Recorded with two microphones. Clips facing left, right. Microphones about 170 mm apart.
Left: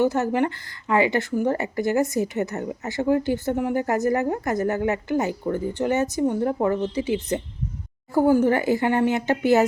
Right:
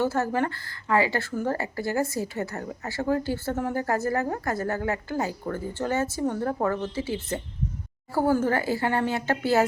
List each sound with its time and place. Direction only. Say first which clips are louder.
0.0 s a woman's voice: left 4 dB; 20° left (ahead or behind)